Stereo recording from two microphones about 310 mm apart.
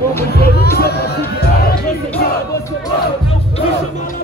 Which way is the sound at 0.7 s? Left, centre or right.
Left.